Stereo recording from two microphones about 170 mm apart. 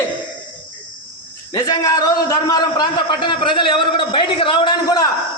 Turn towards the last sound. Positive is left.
turn(degrees=20)  # may be behind; listen again after turning